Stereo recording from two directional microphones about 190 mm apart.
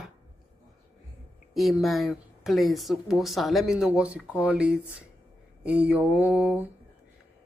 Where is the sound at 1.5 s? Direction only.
Centre (ahead or behind).